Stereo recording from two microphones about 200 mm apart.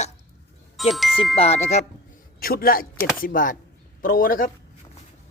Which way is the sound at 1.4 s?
35° left (ahead or behind).